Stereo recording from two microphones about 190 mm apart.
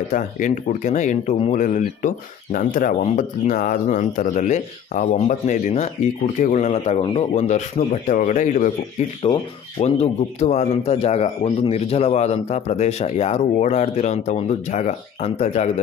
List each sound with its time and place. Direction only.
0.1 s speech: 40° left (ahead or behind)
9.2 s speech: 30° left (ahead or behind)